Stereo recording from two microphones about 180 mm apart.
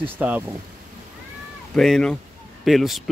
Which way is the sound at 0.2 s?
10° right (ahead or behind).